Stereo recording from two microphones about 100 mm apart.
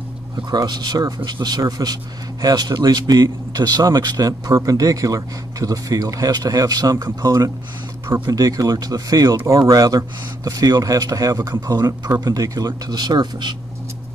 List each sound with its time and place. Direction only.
0.5 s a man's voice: 45° right (ahead or behind)